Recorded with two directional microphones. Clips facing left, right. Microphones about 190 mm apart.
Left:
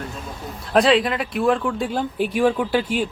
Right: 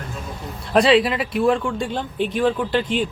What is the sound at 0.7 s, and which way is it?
Speech, centre (ahead or behind).